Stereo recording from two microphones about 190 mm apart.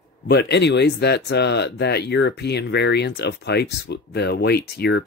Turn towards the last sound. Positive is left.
turn(degrees=60)  # may be behind; listen again after turning